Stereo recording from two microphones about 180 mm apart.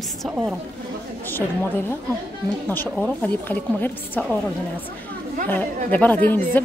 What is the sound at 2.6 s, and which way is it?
Speech, 10° left (ahead or behind).